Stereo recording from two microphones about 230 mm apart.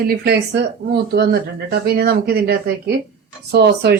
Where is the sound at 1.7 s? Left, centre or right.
Right.